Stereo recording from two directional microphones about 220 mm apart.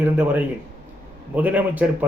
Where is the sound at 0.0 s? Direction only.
10° right (ahead or behind).